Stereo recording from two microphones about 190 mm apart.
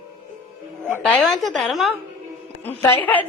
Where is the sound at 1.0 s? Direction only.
Centre (ahead or behind).